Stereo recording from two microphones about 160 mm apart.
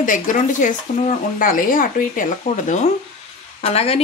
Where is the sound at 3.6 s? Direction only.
40° left (ahead or behind).